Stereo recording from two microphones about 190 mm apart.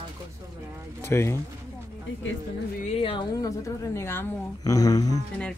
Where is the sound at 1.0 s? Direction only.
15° left (ahead or behind).